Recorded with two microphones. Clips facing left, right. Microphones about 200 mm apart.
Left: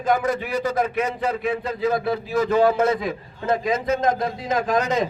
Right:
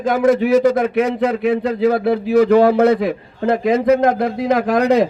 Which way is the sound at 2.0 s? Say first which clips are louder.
Right 9 dB; 65° right (ahead or behind).